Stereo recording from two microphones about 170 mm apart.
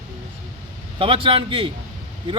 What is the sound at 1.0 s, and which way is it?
Speech, 30° right (ahead or behind).